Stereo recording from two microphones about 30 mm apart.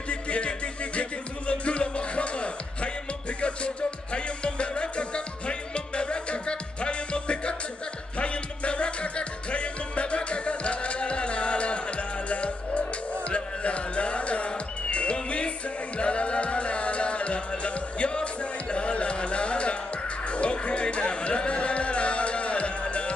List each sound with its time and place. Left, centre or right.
0.1 s music: left